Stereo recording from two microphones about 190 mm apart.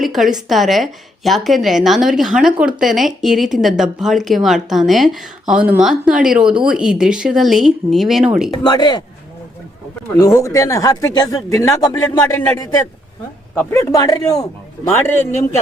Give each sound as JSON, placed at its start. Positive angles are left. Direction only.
{"t": 0.0, "sound": "a woman's voice", "side_deg": 0}
{"t": 8.6, "sound": "speech", "side_deg": 20}
{"t": 10.2, "sound": "speech", "side_deg": 15}